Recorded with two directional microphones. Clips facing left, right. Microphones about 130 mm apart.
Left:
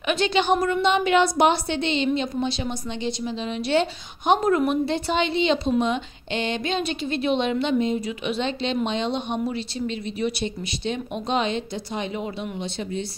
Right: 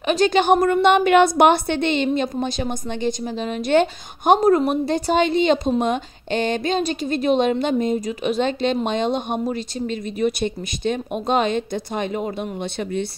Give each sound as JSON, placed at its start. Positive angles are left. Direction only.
{"t": 0.0, "sound": "speech", "side_deg": -40}
{"t": 4.4, "sound": "a woman's voice", "side_deg": -35}